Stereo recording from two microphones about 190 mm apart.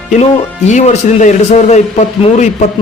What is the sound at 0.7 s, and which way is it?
Speech, 40° left (ahead or behind).